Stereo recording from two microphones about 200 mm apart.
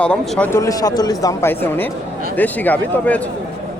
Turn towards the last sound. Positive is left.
turn(degrees=10)  # may be behind; listen again after turning